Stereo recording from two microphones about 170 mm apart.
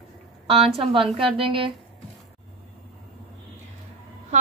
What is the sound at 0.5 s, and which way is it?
A woman's voice, 35° right (ahead or behind).